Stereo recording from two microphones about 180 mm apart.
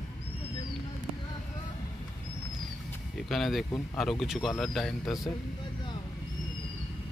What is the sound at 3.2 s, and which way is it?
Speech, centre (ahead or behind).